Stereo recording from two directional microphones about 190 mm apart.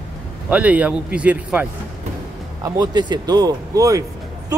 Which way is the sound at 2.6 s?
20° right (ahead or behind).